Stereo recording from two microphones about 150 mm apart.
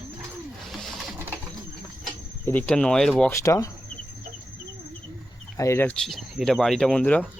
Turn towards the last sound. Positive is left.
turn(degrees=10)  # may be behind; listen again after turning